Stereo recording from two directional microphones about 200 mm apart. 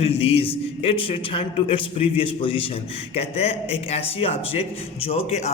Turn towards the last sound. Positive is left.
turn(degrees=35)  # may be behind; listen again after turning